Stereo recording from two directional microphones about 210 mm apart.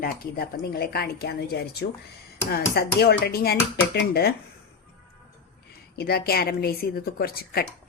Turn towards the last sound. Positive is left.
turn(degrees=45)  # may be behind; listen again after turning